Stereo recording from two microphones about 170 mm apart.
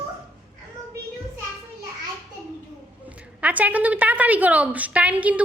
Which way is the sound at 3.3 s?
10° right (ahead or behind).